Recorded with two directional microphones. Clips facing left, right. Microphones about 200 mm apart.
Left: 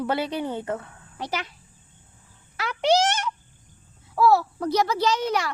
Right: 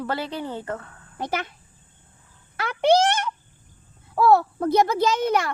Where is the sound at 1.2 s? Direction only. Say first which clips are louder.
Right 3 dB; 55° right (ahead or behind).